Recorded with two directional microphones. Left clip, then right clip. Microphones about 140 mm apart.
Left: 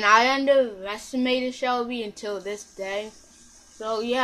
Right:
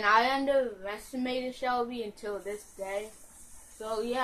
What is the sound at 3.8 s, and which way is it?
Speech, 25° left (ahead or behind).